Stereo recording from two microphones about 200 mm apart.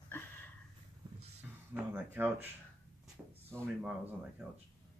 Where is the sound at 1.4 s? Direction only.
5° right (ahead or behind).